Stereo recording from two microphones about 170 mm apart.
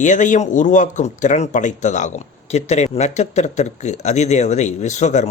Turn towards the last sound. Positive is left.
turn(degrees=45)  # may be behind; listen again after turning